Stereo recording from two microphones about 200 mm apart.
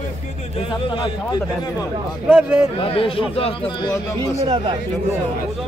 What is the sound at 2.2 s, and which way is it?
Speech, 5° right (ahead or behind).